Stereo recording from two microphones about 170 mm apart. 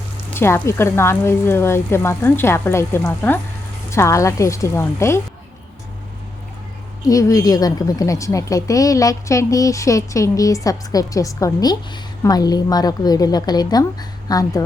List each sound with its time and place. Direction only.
0.3 s speech: 15° left (ahead or behind)
7.0 s a woman's voice: 20° left (ahead or behind)